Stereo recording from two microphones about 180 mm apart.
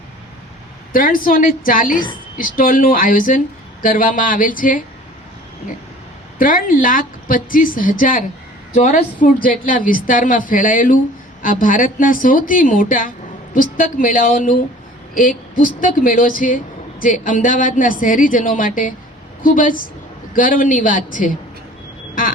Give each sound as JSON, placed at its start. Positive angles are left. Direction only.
{"t": 0.9, "sound": "a woman's voice", "side_deg": 50}
{"t": 6.4, "sound": "a woman's voice", "side_deg": 50}